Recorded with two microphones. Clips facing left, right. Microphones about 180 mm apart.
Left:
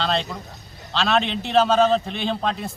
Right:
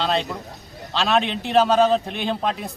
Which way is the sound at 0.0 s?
10° right (ahead or behind).